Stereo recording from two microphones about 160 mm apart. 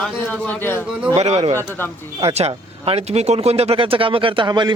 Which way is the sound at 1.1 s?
40° right (ahead or behind).